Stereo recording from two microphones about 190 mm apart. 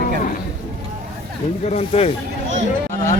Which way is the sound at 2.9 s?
40° left (ahead or behind).